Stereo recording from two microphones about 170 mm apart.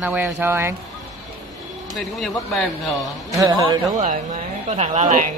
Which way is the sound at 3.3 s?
20° right (ahead or behind).